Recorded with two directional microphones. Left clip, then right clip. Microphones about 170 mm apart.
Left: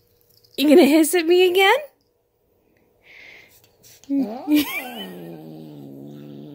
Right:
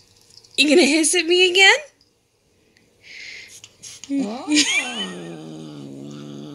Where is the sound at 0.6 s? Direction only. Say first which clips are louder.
Left 1 dB; 30° left (ahead or behind).